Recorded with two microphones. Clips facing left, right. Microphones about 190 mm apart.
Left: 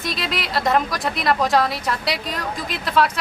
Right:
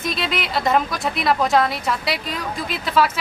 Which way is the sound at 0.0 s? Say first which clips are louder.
Right 2 dB; centre (ahead or behind).